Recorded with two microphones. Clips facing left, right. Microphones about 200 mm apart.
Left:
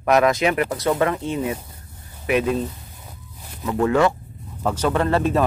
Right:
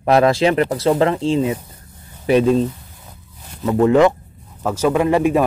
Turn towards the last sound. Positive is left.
turn(degrees=-10)  # may be behind; listen again after turning